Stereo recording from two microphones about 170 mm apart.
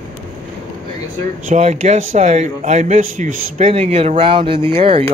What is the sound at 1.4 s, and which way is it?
A man's voice, 40° right (ahead or behind).